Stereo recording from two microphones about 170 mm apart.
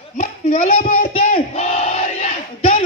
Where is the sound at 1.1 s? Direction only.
40° left (ahead or behind).